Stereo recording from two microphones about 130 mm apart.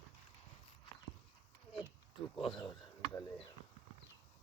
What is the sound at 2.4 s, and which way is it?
Speech, 40° left (ahead or behind).